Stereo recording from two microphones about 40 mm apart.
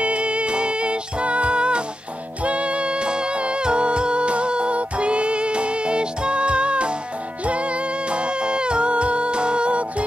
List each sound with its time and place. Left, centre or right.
0.0 s music: right